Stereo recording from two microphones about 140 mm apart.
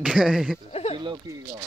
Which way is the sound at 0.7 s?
45° left (ahead or behind).